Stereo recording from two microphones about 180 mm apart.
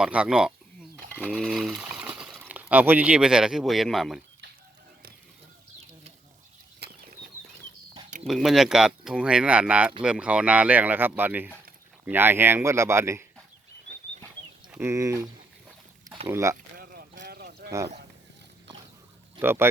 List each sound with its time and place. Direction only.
0.0 s speech: 5° right (ahead or behind)
8.3 s speech: centre (ahead or behind)
14.7 s speech: 15° right (ahead or behind)
16.7 s a sound: 55° right (ahead or behind)
17.7 s speech: 15° right (ahead or behind)
19.4 s speech: 10° right (ahead or behind)